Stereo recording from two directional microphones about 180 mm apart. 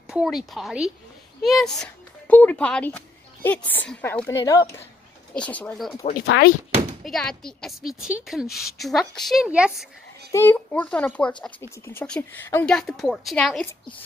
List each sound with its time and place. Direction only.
0.1 s a woman's voice: centre (ahead or behind); by 4.7 s 20° left (ahead or behind)
5.3 s a woman's voice: 5° left (ahead or behind)
6.1 s speech: 65° left (ahead or behind)
7.0 s a woman's voice: centre (ahead or behind)
10.3 s a woman's voice: 10° left (ahead or behind)